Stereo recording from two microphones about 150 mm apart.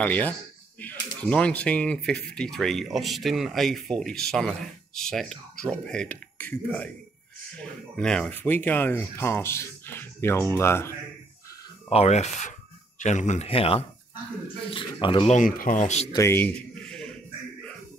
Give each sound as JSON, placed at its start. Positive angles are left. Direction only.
{"t": 0.0, "sound": "speech", "side_deg": 10}
{"t": 7.9, "sound": "speech", "side_deg": 5}
{"t": 11.9, "sound": "speech", "side_deg": 45}
{"t": 15.2, "sound": "speech", "side_deg": 60}
{"t": 16.1, "sound": "a sound", "side_deg": 20}